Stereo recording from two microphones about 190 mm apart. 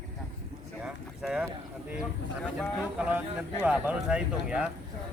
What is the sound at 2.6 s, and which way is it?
Speech, 5° right (ahead or behind).